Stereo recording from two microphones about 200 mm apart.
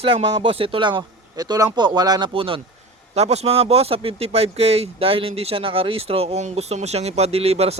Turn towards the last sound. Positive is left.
turn(degrees=-30)  # may be behind; listen again after turning